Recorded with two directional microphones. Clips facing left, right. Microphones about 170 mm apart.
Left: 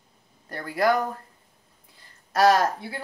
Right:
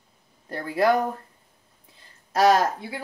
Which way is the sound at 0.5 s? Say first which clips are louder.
Right 2 dB; 20° right (ahead or behind).